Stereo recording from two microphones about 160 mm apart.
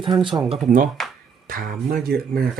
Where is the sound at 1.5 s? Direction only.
60° right (ahead or behind).